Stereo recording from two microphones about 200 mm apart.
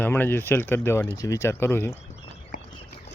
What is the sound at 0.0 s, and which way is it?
Speech, 10° left (ahead or behind).